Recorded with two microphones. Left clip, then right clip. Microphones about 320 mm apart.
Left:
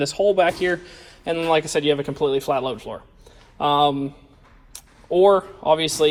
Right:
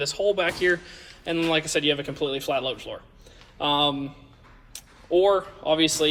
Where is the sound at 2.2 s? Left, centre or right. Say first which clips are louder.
Left 7 dB; left.